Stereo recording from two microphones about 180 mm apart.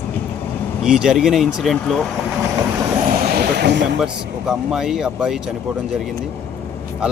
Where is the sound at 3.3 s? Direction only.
65° right (ahead or behind).